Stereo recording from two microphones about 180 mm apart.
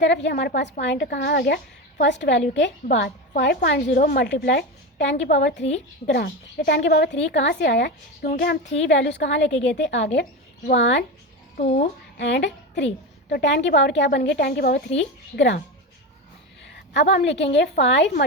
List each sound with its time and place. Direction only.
0.0 s a woman's voice: 80° left; by 8.5 s 60° left (ahead or behind)
8.8 s a woman's voice: 85° left
11.5 s speech: 40° left (ahead or behind)
12.1 s a woman's voice: 75° left (ahead or behind)
16.6 s a sound: 80° left
17.2 s a woman's voice: 70° left (ahead or behind)